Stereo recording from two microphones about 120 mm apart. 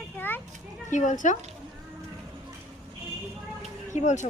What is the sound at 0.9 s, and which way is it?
Speech, 90° left.